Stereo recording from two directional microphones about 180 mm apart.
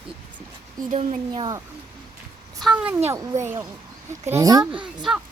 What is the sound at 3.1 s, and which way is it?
Speech, 15° right (ahead or behind).